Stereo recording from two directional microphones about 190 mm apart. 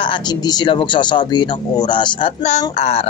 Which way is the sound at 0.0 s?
25° left (ahead or behind).